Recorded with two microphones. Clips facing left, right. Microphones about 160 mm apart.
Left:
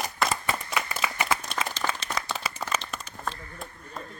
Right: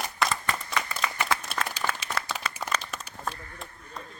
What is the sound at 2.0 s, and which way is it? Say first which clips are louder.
Applause: left 1 dB; 5° right (ahead or behind).